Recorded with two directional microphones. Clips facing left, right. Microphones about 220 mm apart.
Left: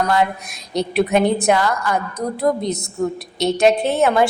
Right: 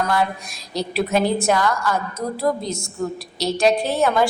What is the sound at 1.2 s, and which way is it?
Speech, 20° left (ahead or behind).